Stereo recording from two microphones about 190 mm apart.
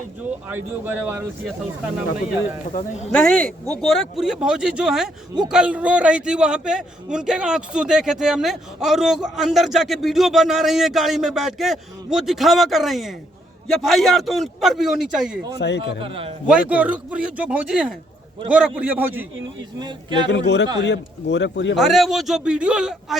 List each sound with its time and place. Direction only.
0.5 s speech: 10° right (ahead or behind)
3.1 s a man's voice: 5° left (ahead or behind)
15.5 s speech: 60° left (ahead or behind)
16.0 s speech: 30° right (ahead or behind)
16.5 s speech: 5° right (ahead or behind)
19.8 s speech: 25° right (ahead or behind)
20.3 s a man's voice: 65° left (ahead or behind)
21.8 s a man's voice: centre (ahead or behind)